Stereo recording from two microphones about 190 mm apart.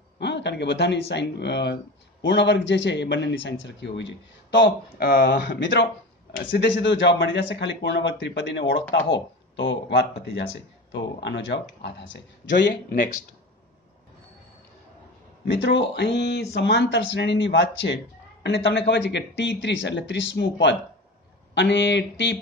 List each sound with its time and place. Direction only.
0.2 s speech: 65° left (ahead or behind)
6.3 s a man's voice: 50° left (ahead or behind)
6.8 s speech: 70° left (ahead or behind)
15.4 s speech: 70° left (ahead or behind)